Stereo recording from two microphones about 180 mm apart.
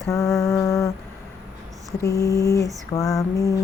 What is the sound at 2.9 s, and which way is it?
Lullaby, 20° left (ahead or behind).